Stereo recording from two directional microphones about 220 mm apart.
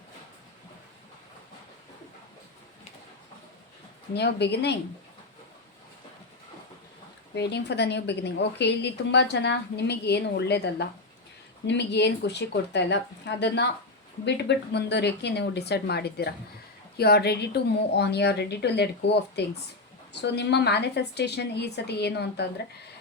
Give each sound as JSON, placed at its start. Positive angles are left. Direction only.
{"t": 4.1, "sound": "a woman's voice", "side_deg": 50}
{"t": 7.3, "sound": "a woman's voice", "side_deg": 50}